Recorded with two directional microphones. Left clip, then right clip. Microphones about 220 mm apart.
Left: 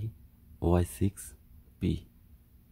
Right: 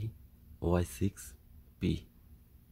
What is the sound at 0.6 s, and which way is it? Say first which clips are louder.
Speech: left 3 dB; 15° left (ahead or behind).